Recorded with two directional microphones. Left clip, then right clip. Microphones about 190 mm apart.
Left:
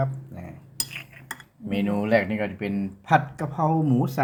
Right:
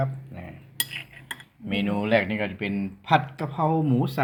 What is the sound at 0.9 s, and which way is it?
Cutlery, 30° left (ahead or behind).